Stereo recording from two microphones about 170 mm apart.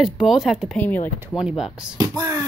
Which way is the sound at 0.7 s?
10° left (ahead or behind).